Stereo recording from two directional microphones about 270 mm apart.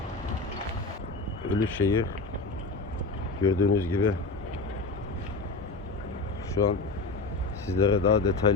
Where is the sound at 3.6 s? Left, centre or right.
Left.